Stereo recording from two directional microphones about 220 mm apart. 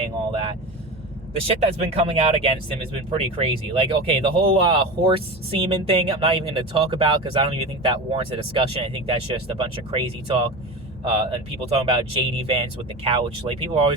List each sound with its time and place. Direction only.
1.5 s speech: 25° right (ahead or behind)